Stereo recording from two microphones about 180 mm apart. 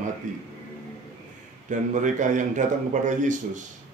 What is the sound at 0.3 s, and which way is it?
Speech, 45° right (ahead or behind).